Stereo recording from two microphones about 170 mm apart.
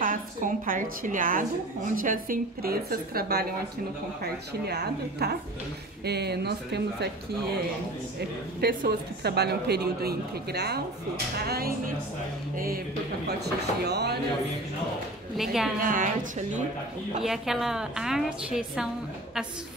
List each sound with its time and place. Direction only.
0.0 s a woman's voice: 50° right (ahead or behind); by 7.1 s 75° right (ahead or behind)
8.5 s a woman's voice: 65° right (ahead or behind)
13.3 s a woman's voice: 75° right (ahead or behind)
15.3 s a woman's voice: centre (ahead or behind)
15.8 s speech: 50° right (ahead or behind)
17.2 s a woman's voice: centre (ahead or behind)